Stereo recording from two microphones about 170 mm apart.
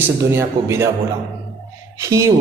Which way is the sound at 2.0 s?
15° right (ahead or behind).